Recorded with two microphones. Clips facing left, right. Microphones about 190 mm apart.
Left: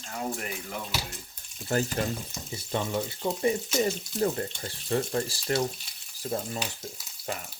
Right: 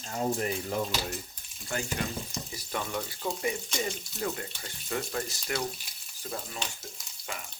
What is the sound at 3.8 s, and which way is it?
Speech, 40° left (ahead or behind).